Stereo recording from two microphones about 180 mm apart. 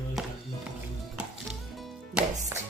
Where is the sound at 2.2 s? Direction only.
5° right (ahead or behind).